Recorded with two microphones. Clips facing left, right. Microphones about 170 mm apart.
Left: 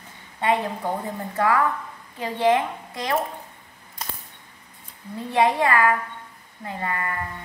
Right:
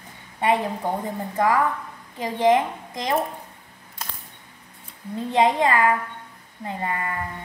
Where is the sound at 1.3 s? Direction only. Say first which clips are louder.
Even; 15° right (ahead or behind).